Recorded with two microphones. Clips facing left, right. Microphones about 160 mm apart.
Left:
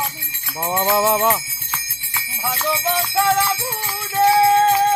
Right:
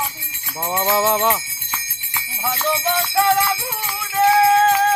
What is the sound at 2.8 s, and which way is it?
Music, 20° left (ahead or behind).